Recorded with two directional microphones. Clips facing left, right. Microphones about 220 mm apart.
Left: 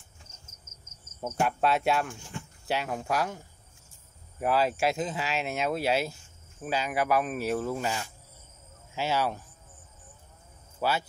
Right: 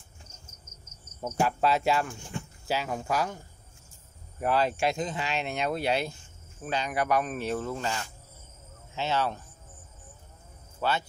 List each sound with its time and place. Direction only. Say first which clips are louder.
1.4 s speech: right 1 dB; centre (ahead or behind)
10.8 s speech: even; 10° left (ahead or behind)